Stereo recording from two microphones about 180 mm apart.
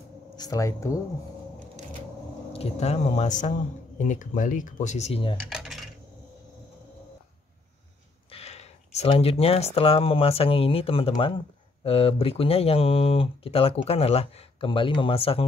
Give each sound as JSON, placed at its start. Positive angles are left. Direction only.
{"t": 0.4, "sound": "speech", "side_deg": 20}
{"t": 2.5, "sound": "speech", "side_deg": 35}
{"t": 5.4, "sound": "cutlery", "side_deg": 0}
{"t": 8.3, "sound": "speech", "side_deg": 35}